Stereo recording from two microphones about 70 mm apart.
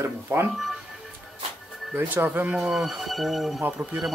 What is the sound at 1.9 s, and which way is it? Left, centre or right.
Speech, right.